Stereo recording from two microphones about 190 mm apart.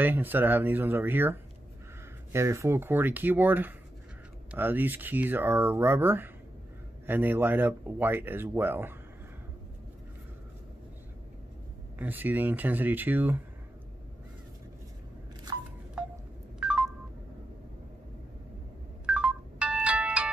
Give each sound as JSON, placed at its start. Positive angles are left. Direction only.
{"t": 0.0, "sound": "speech", "side_deg": -10}
{"t": 12.0, "sound": "speech", "side_deg": -10}
{"t": 16.5, "sound": "telephone dialing", "side_deg": -5}
{"t": 19.0, "sound": "telephone dialing", "side_deg": -5}